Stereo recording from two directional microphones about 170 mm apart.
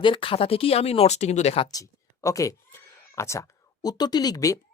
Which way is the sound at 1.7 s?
20° left (ahead or behind).